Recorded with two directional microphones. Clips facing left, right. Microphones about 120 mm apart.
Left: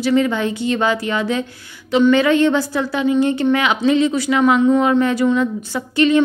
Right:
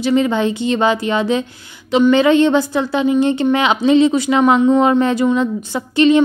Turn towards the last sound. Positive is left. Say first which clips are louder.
# right 3 dB
turn(degrees=-20)  # may be behind; listen again after turning